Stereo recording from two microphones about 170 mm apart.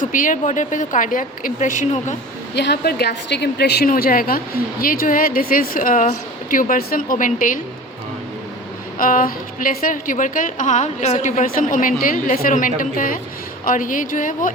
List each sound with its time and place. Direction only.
0.0 s a woman's voice: 50° left (ahead or behind)
2.6 s a woman's voice: 80° left; by 7.6 s 50° left (ahead or behind)
9.0 s a woman's voice: 55° left (ahead or behind)